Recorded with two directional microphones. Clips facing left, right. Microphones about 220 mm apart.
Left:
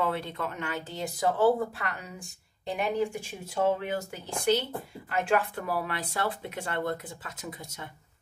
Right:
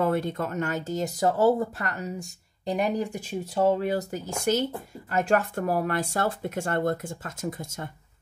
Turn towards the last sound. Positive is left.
turn(degrees=-45)  # may be behind; listen again after turning